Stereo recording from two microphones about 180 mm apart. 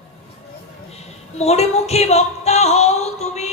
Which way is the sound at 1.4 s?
35° left (ahead or behind).